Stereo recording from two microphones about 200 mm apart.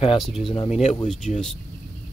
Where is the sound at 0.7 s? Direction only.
35° left (ahead or behind).